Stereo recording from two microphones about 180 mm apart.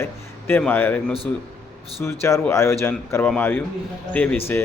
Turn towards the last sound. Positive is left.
turn(degrees=10)  # may be behind; listen again after turning